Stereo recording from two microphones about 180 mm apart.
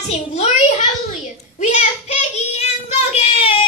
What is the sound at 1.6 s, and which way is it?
Child singing, 40° left (ahead or behind).